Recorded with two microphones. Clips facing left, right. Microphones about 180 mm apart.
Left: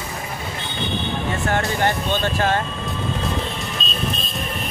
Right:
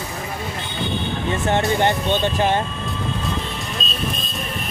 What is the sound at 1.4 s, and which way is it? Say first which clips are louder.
Speech: right 3 dB; 20° right (ahead or behind).